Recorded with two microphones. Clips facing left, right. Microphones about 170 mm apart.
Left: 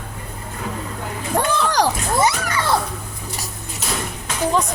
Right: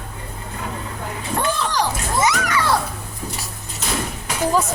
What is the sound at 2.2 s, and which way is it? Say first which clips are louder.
Speech: right 2 dB; 30° left (ahead or behind).